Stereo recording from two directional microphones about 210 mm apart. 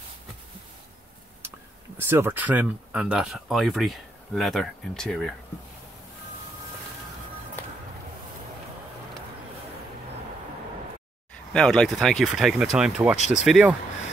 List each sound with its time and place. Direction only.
2.0 s speech: 10° right (ahead or behind)
11.5 s speech: 5° left (ahead or behind)
13.2 s speech: 35° left (ahead or behind)
13.5 s speech: 5° right (ahead or behind)